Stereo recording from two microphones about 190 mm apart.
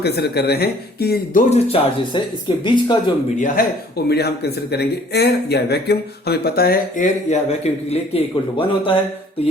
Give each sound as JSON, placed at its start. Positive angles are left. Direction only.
{"t": 0.0, "sound": "a man's voice", "side_deg": 60}
{"t": 3.3, "sound": "a man's voice", "side_deg": 45}